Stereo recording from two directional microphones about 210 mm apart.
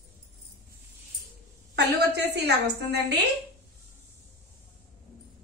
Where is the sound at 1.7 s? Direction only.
50° right (ahead or behind).